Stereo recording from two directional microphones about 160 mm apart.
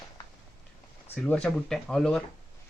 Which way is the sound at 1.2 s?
5° left (ahead or behind).